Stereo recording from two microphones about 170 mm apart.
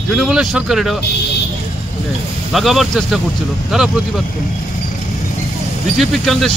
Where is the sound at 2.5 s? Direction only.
Centre (ahead or behind).